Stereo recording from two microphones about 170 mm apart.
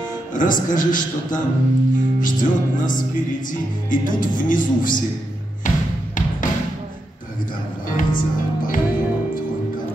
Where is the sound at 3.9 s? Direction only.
50° left (ahead or behind).